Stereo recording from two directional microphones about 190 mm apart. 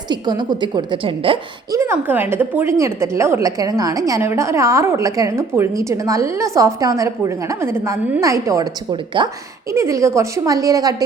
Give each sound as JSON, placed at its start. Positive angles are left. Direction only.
{"t": 0.1, "sound": "a woman's voice", "side_deg": -20}
{"t": 1.8, "sound": "a woman's voice", "side_deg": -10}